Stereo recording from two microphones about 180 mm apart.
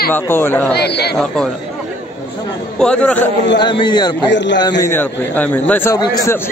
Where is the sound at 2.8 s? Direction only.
5° left (ahead or behind).